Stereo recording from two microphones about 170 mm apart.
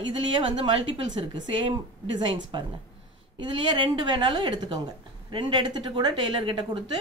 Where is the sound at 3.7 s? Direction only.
25° right (ahead or behind).